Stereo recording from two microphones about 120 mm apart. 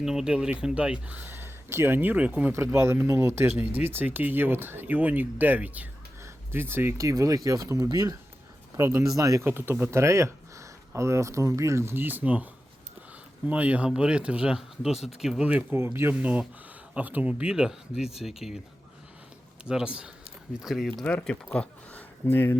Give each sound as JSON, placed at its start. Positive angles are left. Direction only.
{"t": 0.0, "sound": "speech", "side_deg": -5}
{"t": 13.5, "sound": "speech", "side_deg": -10}
{"t": 19.6, "sound": "speech", "side_deg": -10}
{"t": 21.0, "sound": "speech", "side_deg": 10}